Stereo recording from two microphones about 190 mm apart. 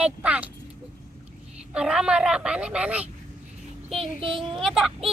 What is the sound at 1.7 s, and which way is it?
A woman's voice, 5° right (ahead or behind).